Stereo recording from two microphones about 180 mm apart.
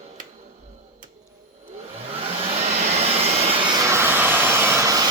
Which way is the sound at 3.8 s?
15° right (ahead or behind).